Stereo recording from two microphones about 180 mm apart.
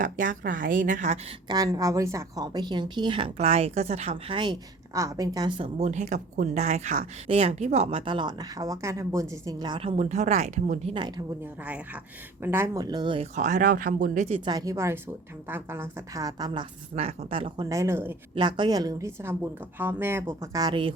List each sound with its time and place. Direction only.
0.0 s a woman's voice: 45° right (ahead or behind)
1.5 s a woman's voice: 20° right (ahead or behind); by 10.9 s 40° right (ahead or behind)
12.4 s a woman's voice: 15° right (ahead or behind)
13.3 s a woman's voice: 45° right (ahead or behind)
14.4 s a woman's voice: 20° right (ahead or behind)
16.9 s a woman's voice: 35° right (ahead or behind)
17.7 s a woman's voice: 15° right (ahead or behind)
18.3 s a woman's voice: 25° right (ahead or behind)